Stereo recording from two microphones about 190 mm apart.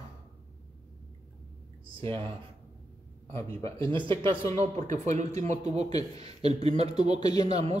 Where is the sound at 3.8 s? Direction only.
25° right (ahead or behind).